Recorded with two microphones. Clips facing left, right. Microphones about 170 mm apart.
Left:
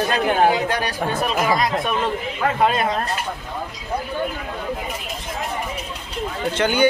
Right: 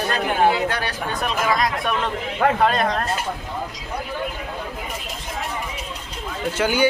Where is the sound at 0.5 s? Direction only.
15° left (ahead or behind).